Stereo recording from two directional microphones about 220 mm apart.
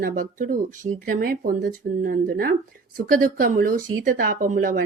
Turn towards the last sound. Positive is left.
turn(degrees=-35)  # may be behind; listen again after turning